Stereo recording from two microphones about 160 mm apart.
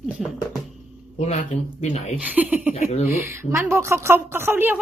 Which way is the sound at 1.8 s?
45° left (ahead or behind).